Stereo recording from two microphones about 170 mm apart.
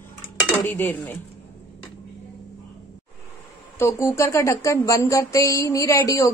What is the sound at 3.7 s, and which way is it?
Speech, 15° left (ahead or behind).